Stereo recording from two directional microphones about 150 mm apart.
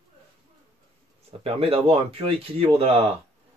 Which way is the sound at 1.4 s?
40° right (ahead or behind).